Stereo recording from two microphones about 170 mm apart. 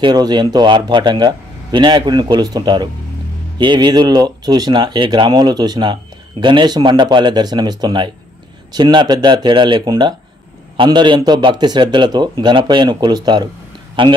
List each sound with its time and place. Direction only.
0.0 s speech: 25° right (ahead or behind)